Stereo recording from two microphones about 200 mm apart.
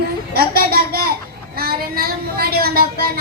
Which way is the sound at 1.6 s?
50° right (ahead or behind).